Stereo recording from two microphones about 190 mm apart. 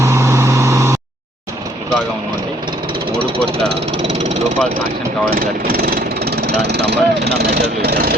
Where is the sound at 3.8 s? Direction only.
35° right (ahead or behind).